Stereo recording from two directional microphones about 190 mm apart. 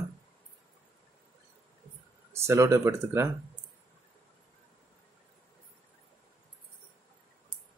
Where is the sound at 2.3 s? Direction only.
15° right (ahead or behind).